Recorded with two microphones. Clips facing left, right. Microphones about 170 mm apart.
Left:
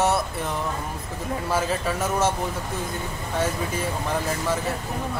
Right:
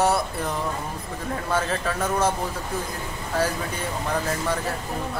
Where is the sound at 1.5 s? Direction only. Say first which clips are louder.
Even; 5° left (ahead or behind).